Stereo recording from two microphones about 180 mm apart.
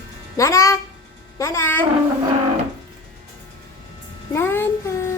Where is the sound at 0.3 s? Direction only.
15° left (ahead or behind).